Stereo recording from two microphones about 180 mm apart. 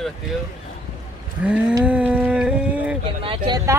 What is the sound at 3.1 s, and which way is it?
Speech, 30° right (ahead or behind).